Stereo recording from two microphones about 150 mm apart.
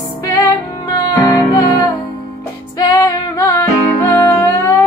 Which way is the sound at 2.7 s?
25° left (ahead or behind).